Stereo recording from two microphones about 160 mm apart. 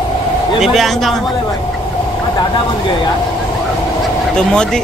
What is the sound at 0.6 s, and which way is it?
Speech, centre (ahead or behind).